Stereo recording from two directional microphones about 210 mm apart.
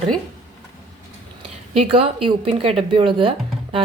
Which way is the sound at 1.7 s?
25° right (ahead or behind).